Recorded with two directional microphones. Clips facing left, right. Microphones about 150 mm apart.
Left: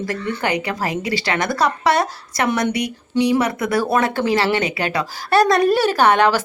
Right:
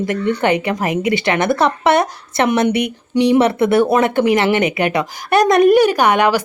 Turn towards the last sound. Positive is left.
turn(degrees=-10)  # may be behind; listen again after turning